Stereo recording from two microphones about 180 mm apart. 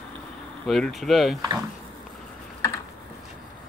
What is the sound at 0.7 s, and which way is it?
Speech, centre (ahead or behind).